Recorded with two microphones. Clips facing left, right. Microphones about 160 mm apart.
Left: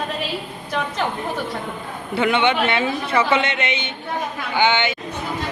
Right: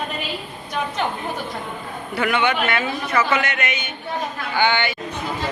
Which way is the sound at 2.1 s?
25° left (ahead or behind).